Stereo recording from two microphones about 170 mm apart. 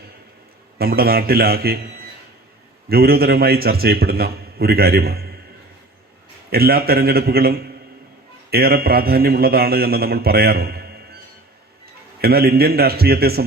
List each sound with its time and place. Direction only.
0.8 s a man's voice: 65° right (ahead or behind)
2.9 s a man's voice: 65° right (ahead or behind)
6.5 s a man's voice: 65° right (ahead or behind)
12.2 s a man's voice: 65° right (ahead or behind)